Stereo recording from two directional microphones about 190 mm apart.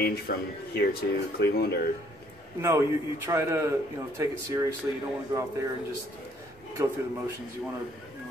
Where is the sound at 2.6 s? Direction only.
15° right (ahead or behind).